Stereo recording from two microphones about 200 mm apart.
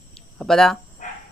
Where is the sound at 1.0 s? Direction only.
40° left (ahead or behind).